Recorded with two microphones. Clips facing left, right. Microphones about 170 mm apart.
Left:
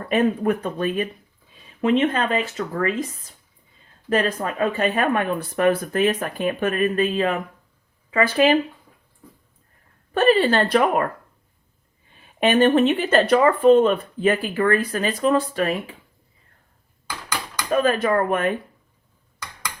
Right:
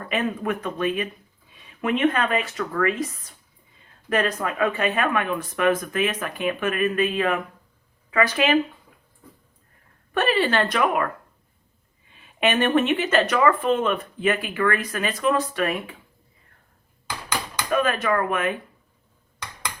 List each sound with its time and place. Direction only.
0.1 s speech: 35° left (ahead or behind)
4.1 s speech: 30° left (ahead or behind)
10.1 s speech: 30° left (ahead or behind)
12.4 s speech: 30° left (ahead or behind)
17.7 s speech: 35° left (ahead or behind)